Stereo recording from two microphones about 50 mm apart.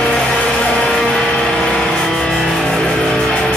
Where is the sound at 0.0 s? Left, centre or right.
Centre.